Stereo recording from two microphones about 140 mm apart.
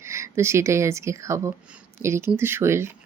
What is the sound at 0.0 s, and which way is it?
Speech, 20° right (ahead or behind).